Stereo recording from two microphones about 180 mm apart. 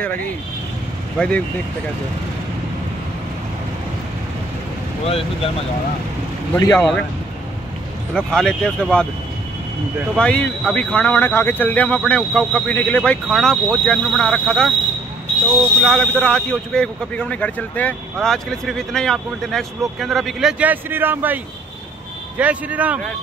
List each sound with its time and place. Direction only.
1.1 s speech: 5° left (ahead or behind)
5.0 s speech: 35° left (ahead or behind)
6.7 s speech: 5° left (ahead or behind)
8.1 s speech: 5° left (ahead or behind)
10.1 s speech: 5° left (ahead or behind)
15.8 s speech: 5° left (ahead or behind); by 21.4 s 10° right (ahead or behind)
22.4 s speech: 10° right (ahead or behind)